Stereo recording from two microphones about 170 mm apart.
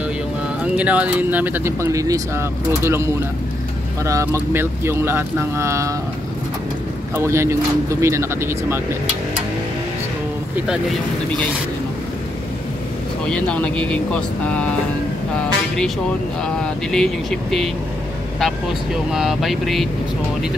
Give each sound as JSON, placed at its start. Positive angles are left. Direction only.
{"t": 0.7, "sound": "speech", "side_deg": -10}
{"t": 7.2, "sound": "speech", "side_deg": -15}
{"t": 13.3, "sound": "speech", "side_deg": 5}
{"t": 16.4, "sound": "speech", "side_deg": 5}